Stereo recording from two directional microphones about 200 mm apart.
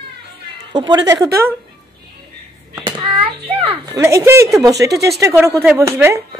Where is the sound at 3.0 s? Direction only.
30° right (ahead or behind).